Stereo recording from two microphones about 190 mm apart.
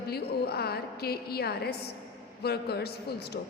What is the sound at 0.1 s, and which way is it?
A woman's voice, 55° left (ahead or behind).